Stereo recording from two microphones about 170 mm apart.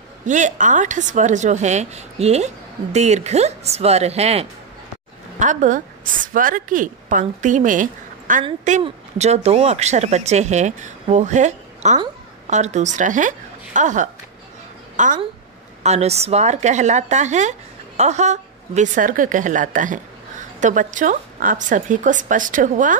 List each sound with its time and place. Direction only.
0.3 s a woman's voice: 45° right (ahead or behind)
8.8 s a woman's voice: 40° right (ahead or behind)